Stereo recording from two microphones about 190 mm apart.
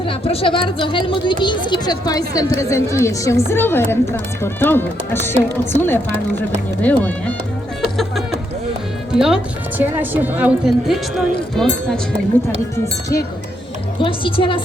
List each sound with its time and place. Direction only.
0.0 s a woman's voice: 30° left (ahead or behind); by 7.3 s 10° left (ahead or behind)
9.1 s speech: 5° right (ahead or behind)
12.8 s a woman's voice: 15° left (ahead or behind)
14.0 s speech: 30° left (ahead or behind)